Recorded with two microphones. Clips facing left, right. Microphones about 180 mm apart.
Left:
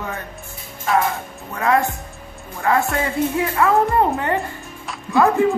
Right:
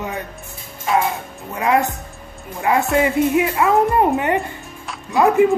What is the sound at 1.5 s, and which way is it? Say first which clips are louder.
Speech: right 1 dB; 15° right (ahead or behind).